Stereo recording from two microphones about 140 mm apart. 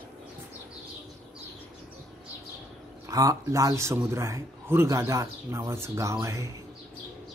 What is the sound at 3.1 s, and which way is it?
A man's voice, 25° right (ahead or behind).